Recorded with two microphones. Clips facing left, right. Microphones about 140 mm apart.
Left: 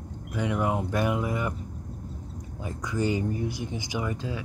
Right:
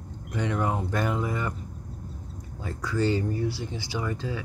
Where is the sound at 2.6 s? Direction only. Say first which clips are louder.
Right 2 dB; 15° left (ahead or behind).